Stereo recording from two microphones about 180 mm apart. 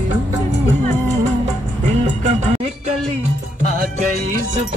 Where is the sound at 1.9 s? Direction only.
40° right (ahead or behind).